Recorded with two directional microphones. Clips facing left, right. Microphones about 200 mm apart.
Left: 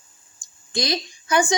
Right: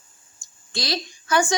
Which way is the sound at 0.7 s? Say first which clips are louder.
Left 3 dB; 20° left (ahead or behind).